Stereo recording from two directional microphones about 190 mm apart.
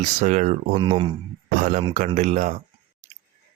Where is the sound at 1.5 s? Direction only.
40° right (ahead or behind).